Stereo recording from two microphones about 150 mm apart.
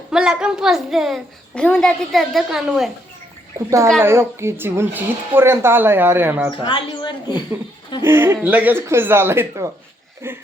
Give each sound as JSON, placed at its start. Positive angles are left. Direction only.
{"t": 0.1, "sound": "a child's voice", "side_deg": -5}
{"t": 4.0, "sound": "speech", "side_deg": -15}
{"t": 6.6, "sound": "a woman's voice", "side_deg": 35}
{"t": 8.0, "sound": "speech", "side_deg": -15}